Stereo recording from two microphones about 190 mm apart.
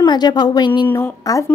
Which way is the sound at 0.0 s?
20° left (ahead or behind).